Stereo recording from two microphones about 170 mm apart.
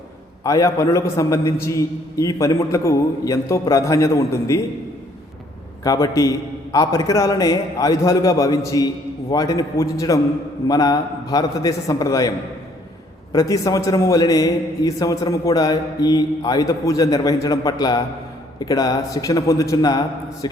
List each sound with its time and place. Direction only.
0.4 s a man's voice: 20° left (ahead or behind)
5.8 s a man's voice: 20° left (ahead or behind)
13.3 s a man's voice: 20° left (ahead or behind)